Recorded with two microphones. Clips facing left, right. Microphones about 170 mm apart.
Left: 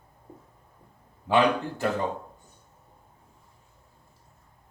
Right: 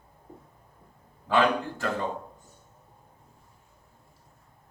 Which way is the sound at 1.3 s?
15° left (ahead or behind).